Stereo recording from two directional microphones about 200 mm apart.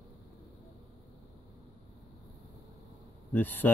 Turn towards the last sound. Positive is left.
turn(degrees=10)  # may be behind; listen again after turning